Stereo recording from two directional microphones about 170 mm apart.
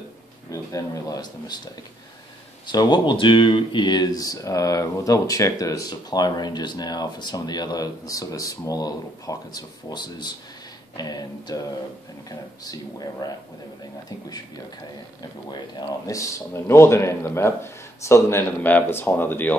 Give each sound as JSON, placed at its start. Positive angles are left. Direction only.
{"t": 0.5, "sound": "speech", "side_deg": 20}
{"t": 2.6, "sound": "speech", "side_deg": 25}
{"t": 15.5, "sound": "speech", "side_deg": 25}